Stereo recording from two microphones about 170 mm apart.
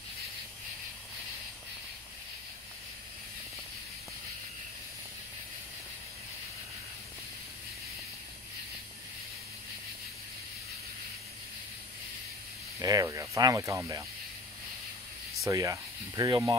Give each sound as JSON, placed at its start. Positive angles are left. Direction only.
{"t": 12.8, "sound": "speech", "side_deg": -20}
{"t": 15.4, "sound": "speech", "side_deg": -20}